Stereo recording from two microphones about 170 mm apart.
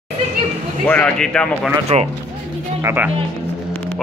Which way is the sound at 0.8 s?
5° left (ahead or behind).